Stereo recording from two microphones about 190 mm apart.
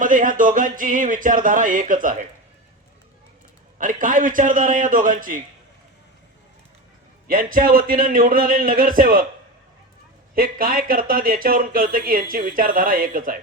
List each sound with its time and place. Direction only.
0.0 s speech: 45° right (ahead or behind)
3.8 s speech: 45° right (ahead or behind)
7.3 s speech: 45° right (ahead or behind)
10.3 s speech: 50° right (ahead or behind)